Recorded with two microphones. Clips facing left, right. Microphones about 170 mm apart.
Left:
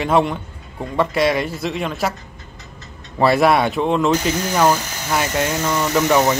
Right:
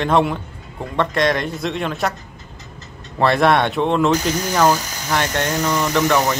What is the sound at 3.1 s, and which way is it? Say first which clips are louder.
Speech: left 1 dB; 5° left (ahead or behind).